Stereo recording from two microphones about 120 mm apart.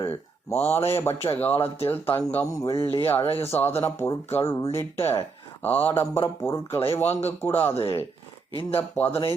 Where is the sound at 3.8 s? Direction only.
20° left (ahead or behind).